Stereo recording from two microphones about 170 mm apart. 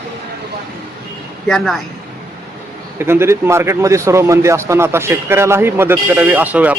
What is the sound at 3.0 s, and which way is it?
Speech, 15° right (ahead or behind).